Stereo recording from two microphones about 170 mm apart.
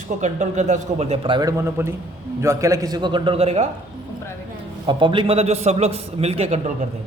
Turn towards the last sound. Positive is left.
turn(degrees=-40)  # may be behind; listen again after turning